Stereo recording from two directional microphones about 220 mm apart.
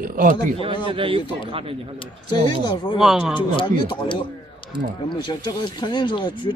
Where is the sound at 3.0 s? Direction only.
Centre (ahead or behind).